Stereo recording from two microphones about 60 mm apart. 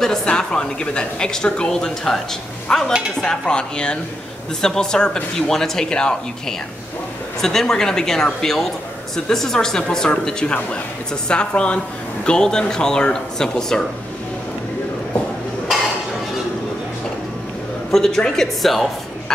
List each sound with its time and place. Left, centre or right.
0.0 s speech: centre
7.4 s speech: centre
17.9 s speech: centre